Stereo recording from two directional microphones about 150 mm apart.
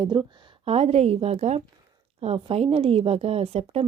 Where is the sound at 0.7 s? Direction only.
45° right (ahead or behind).